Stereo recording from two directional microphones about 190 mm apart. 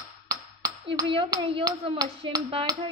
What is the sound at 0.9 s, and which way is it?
Speech, 25° right (ahead or behind).